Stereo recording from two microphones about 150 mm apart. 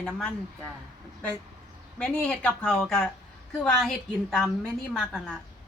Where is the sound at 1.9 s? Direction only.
5° left (ahead or behind).